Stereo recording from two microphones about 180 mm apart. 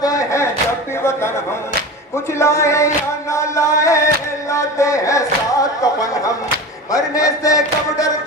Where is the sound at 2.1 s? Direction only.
15° left (ahead or behind).